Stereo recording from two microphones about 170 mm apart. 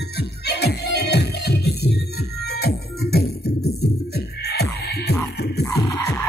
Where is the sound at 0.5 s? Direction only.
75° left (ahead or behind).